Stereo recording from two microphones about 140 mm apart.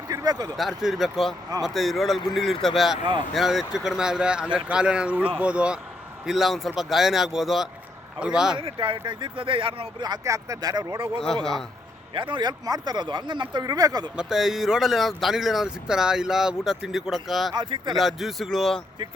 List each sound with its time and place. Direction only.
0.1 s a sound: 25° right (ahead or behind)
0.8 s speech: centre (ahead or behind)
8.5 s speech: 35° right (ahead or behind)
12.1 s speech: 35° right (ahead or behind)
14.2 s speech: 5° right (ahead or behind)
17.5 s speech: 30° right (ahead or behind)
17.9 s speech: centre (ahead or behind)